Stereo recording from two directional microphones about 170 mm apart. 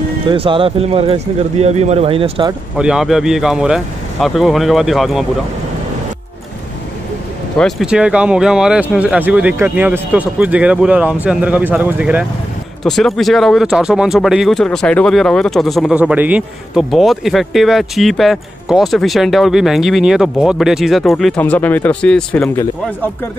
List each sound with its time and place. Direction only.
0.3 s speech: 30° right (ahead or behind)
2.8 s speech: 5° right (ahead or behind)
7.5 s speech: centre (ahead or behind)